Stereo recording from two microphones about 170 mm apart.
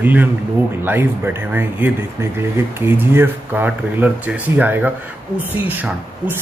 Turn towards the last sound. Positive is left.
turn(degrees=-10)  # may be behind; listen again after turning